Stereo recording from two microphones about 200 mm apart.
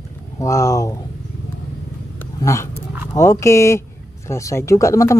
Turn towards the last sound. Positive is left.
turn(degrees=15)  # may be behind; listen again after turning